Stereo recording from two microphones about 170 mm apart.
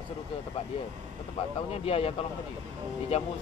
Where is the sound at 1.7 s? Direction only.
35° left (ahead or behind).